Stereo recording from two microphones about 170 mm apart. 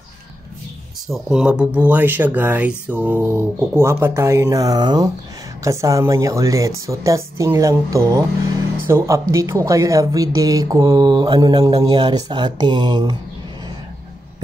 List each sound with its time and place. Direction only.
1.1 s speech: 5° right (ahead or behind); by 13.1 s 25° right (ahead or behind)